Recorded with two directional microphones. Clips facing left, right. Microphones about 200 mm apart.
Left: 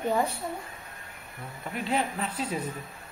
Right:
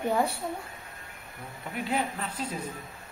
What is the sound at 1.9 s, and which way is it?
Speech, 10° left (ahead or behind).